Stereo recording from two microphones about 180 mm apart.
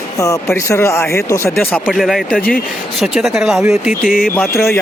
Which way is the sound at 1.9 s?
Centre (ahead or behind).